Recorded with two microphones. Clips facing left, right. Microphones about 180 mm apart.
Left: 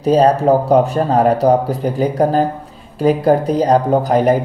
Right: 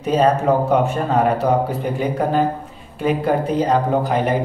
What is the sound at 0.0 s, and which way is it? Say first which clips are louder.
Speech: left 4 dB; 35° left (ahead or behind).